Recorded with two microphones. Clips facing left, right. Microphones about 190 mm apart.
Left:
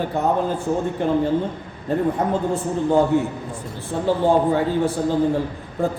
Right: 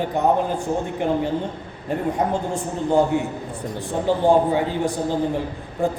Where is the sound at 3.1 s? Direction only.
15° right (ahead or behind).